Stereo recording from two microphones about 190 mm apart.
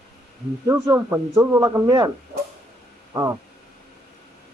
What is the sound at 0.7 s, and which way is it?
Speech, 15° right (ahead or behind).